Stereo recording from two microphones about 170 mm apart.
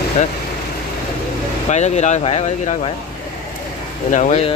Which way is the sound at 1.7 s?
40° left (ahead or behind).